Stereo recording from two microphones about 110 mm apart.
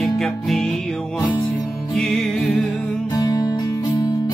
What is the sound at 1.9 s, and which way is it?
Music, 5° left (ahead or behind).